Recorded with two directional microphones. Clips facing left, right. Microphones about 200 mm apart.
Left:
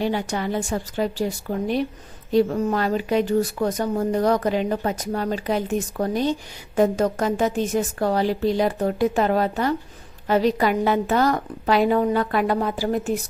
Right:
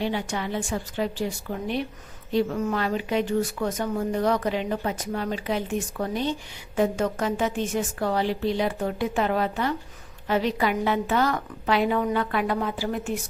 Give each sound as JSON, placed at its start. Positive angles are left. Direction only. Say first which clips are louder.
{"t": 0.0, "sound": "speech", "louder": "left 4 dB", "side_deg": 40}